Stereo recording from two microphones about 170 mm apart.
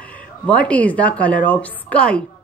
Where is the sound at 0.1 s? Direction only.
10° left (ahead or behind).